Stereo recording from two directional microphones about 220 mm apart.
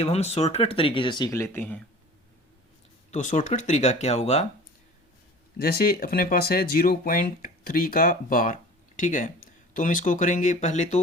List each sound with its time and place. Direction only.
0.0 s speech: 30° left (ahead or behind); by 1.8 s 10° left (ahead or behind)
3.1 s speech: 35° left (ahead or behind)
5.6 s speech: 40° left (ahead or behind)